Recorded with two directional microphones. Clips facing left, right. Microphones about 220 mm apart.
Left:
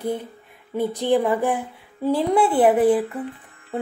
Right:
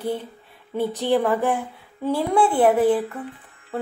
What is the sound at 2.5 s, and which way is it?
Speech, centre (ahead or behind).